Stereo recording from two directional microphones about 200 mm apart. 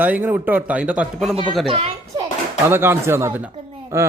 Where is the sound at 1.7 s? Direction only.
30° right (ahead or behind).